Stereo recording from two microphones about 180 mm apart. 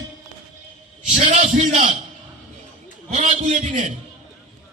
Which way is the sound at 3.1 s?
40° right (ahead or behind).